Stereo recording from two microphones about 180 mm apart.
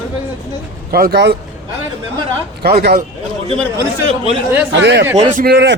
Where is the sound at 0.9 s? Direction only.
55° right (ahead or behind).